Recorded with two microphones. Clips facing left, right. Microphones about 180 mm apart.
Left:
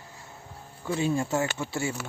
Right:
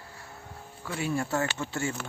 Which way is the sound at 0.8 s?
20° left (ahead or behind).